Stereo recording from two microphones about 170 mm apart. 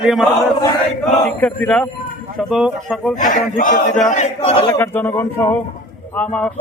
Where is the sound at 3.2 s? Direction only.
50° left (ahead or behind).